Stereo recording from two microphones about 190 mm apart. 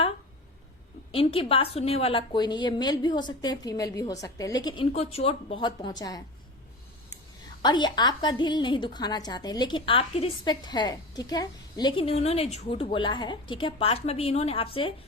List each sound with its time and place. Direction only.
1.1 s a woman's voice: 30° left (ahead or behind)
7.6 s a woman's voice: 25° left (ahead or behind)